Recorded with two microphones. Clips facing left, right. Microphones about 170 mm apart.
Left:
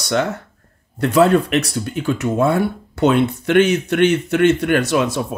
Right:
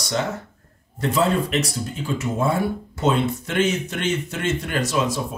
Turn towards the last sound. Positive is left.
turn(degrees=65)  # may be behind; listen again after turning